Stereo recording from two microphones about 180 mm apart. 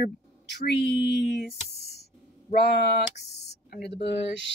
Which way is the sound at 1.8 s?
60° right (ahead or behind).